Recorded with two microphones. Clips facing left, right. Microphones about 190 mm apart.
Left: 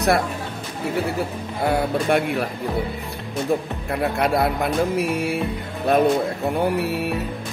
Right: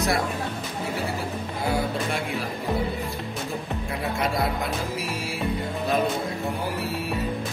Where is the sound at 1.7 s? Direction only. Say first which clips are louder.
Left 7 dB; 60° left (ahead or behind).